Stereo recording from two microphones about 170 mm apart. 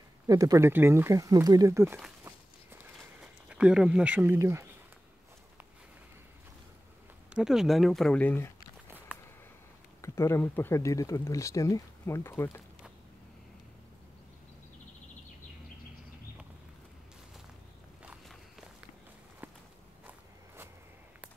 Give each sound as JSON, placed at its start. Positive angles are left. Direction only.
{"t": 0.3, "sound": "speech", "side_deg": -20}
{"t": 2.2, "sound": "walk", "side_deg": -10}
{"t": 7.3, "sound": "speech", "side_deg": 0}
{"t": 8.8, "sound": "a sound", "side_deg": -10}
{"t": 10.0, "sound": "speech", "side_deg": 15}
{"t": 18.0, "sound": "walk", "side_deg": -5}